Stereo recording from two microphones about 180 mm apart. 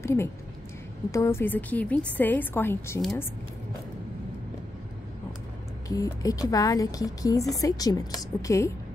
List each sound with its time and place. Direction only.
0.0 s a woman's voice: 15° left (ahead or behind)
5.9 s speech: 20° left (ahead or behind)